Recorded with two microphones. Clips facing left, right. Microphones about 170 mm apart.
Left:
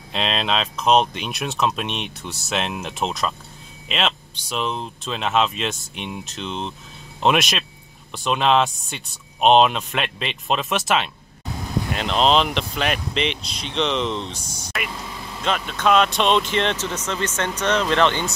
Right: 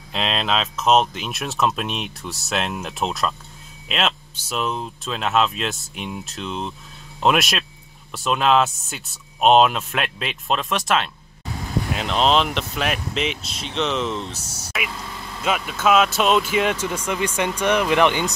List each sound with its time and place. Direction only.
0.1 s speech: centre (ahead or behind)